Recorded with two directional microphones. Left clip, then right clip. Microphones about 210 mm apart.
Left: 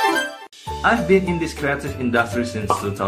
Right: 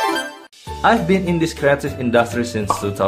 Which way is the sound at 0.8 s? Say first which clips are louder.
Right 1 dB; 45° right (ahead or behind).